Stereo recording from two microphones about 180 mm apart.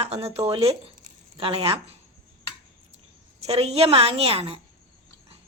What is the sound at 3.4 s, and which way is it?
Speech, 35° right (ahead or behind).